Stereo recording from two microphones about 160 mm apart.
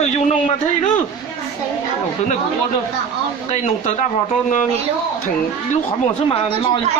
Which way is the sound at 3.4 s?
45° left (ahead or behind).